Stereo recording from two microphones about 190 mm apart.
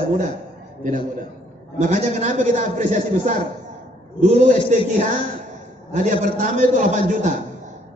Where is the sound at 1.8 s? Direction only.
40° right (ahead or behind).